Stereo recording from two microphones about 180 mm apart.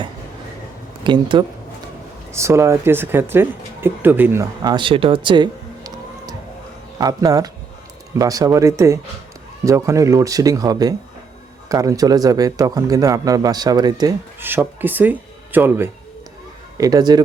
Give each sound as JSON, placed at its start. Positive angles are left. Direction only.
{"t": 1.0, "sound": "speech", "side_deg": -25}
{"t": 2.3, "sound": "speech", "side_deg": -15}
{"t": 14.3, "sound": "speech", "side_deg": -10}